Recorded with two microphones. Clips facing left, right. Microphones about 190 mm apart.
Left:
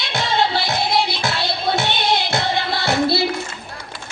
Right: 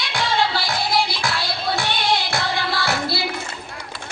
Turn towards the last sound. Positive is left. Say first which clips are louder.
# left 5 dB
turn(degrees=25)  # may be behind; listen again after turning